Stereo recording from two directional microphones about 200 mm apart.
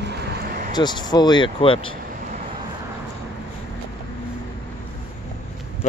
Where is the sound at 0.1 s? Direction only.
55° right (ahead or behind).